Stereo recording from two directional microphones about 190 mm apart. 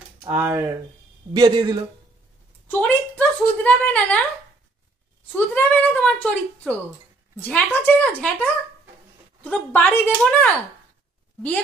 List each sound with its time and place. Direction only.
0.3 s a man's voice: 15° right (ahead or behind)
2.7 s a woman's voice: 5° left (ahead or behind)
5.3 s a woman's voice: 10° left (ahead or behind)
9.4 s a woman's voice: 10° left (ahead or behind)